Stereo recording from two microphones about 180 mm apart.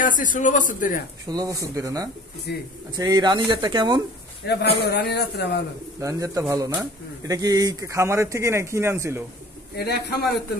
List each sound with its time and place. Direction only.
0.0 s a man's voice: 45° left (ahead or behind)
1.2 s speech: 20° right (ahead or behind)
2.5 s speech: 65° left (ahead or behind)
3.0 s speech: 25° right (ahead or behind)
4.5 s a man's voice: 65° left (ahead or behind)
5.9 s speech: 20° right (ahead or behind)
9.8 s a man's voice: 65° left (ahead or behind)